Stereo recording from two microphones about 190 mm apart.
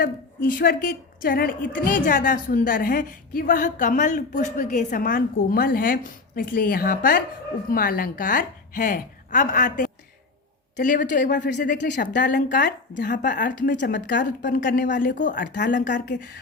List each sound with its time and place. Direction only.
0.4 s a woman's voice: 50° left (ahead or behind)
13.9 s speech: 65° left (ahead or behind)
14.3 s a woman's voice: 45° left (ahead or behind)
15.4 s speech: 65° left (ahead or behind)
15.7 s a woman's voice: 45° left (ahead or behind)
16.0 s speech: 65° left (ahead or behind)